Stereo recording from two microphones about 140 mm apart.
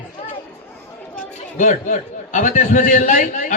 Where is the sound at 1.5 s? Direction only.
65° left (ahead or behind).